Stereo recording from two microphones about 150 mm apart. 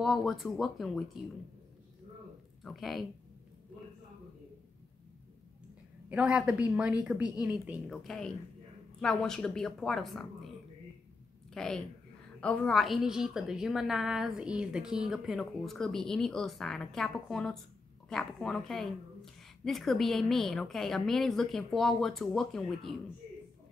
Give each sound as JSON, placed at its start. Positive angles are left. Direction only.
{"t": 0.0, "sound": "a woman's voice", "side_deg": 0}
{"t": 2.6, "sound": "a woman's voice", "side_deg": 0}
{"t": 6.0, "sound": "a woman's voice", "side_deg": -10}
{"t": 11.5, "sound": "a woman's voice", "side_deg": 5}